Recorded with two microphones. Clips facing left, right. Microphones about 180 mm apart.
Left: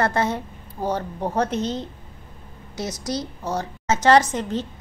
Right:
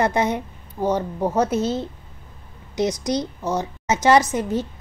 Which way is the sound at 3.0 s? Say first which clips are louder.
Right 4 dB; 15° right (ahead or behind).